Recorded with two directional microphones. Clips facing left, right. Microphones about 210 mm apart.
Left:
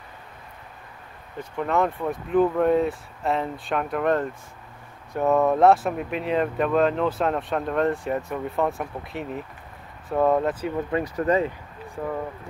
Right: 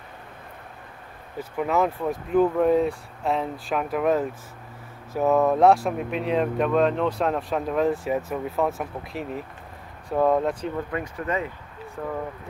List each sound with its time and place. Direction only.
1.4 s speech: 5° right (ahead or behind)
11.1 s speech: 35° left (ahead or behind)
12.0 s speech: 5° left (ahead or behind)